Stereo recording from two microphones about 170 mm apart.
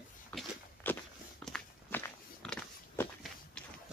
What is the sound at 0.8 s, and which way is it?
Walk, 10° left (ahead or behind).